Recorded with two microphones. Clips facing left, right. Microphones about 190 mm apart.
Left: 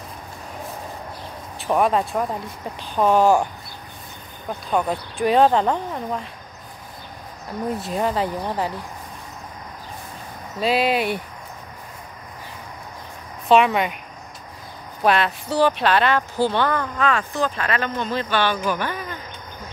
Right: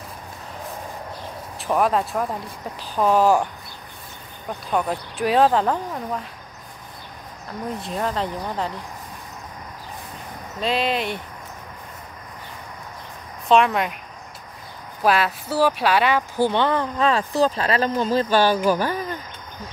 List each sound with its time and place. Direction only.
1.6 s speech: centre (ahead or behind)
4.7 s speech: centre (ahead or behind)
7.8 s speech: 5° left (ahead or behind)
10.6 s speech: 5° left (ahead or behind)
13.5 s speech: centre (ahead or behind)
15.0 s speech: 5° right (ahead or behind); by 16.8 s 20° right (ahead or behind)
17.0 s speech: 35° right (ahead or behind)